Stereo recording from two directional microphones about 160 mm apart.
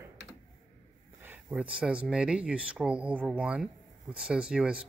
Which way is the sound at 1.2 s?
10° right (ahead or behind).